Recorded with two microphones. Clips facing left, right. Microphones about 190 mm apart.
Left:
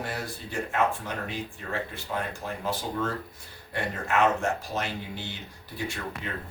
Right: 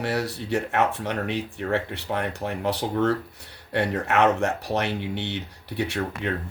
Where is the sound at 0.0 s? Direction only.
70° right (ahead or behind).